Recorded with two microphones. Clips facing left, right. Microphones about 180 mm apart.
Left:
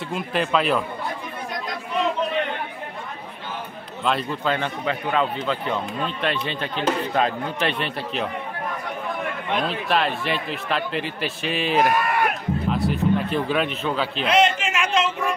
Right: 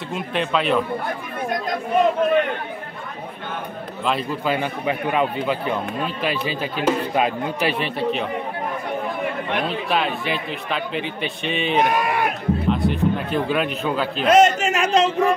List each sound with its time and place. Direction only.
0.1 s speech: centre (ahead or behind)
1.5 s chatter: 50° right (ahead or behind)
4.0 s speech: centre (ahead or behind)
4.6 s speech: 15° right (ahead or behind)
9.6 s speech: centre (ahead or behind)
12.6 s a sound: centre (ahead or behind)
13.8 s speech: centre (ahead or behind)
14.2 s a sound: 45° right (ahead or behind)